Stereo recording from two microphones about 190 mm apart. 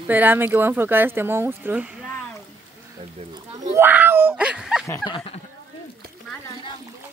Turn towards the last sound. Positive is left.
turn(degrees=30)  # may be behind; listen again after turning